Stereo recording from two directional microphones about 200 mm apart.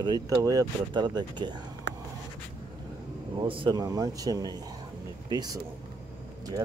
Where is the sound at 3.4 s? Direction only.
25° right (ahead or behind).